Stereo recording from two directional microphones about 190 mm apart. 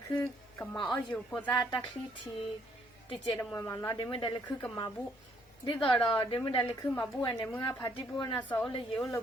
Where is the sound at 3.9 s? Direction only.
25° left (ahead or behind).